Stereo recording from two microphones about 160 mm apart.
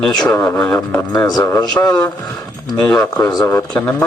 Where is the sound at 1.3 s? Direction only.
25° left (ahead or behind).